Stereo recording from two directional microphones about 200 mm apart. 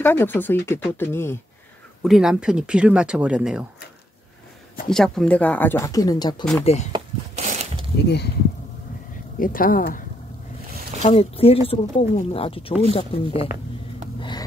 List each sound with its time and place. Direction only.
0.0 s speech: 10° left (ahead or behind)
2.0 s speech: centre (ahead or behind)
4.8 s speech: centre (ahead or behind); by 6.4 s 20° left (ahead or behind)
6.6 s speech: 30° left (ahead or behind)
7.4 s a sound: 35° right (ahead or behind)
9.4 s speech: 45° left (ahead or behind)
11.0 s speech: 30° left (ahead or behind)